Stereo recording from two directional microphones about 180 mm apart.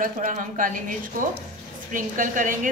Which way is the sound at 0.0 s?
45° right (ahead or behind).